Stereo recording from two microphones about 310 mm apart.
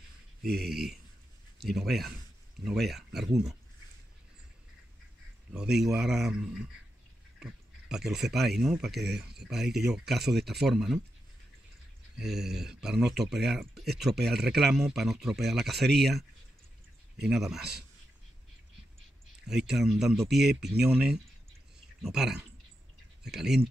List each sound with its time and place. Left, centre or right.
0.5 s speech: right
1.8 s speech: centre
5.5 s speech: centre
7.3 s speech: centre
9.0 s speech: right
9.5 s speech: centre
12.2 s speech: centre
19.4 s speech: centre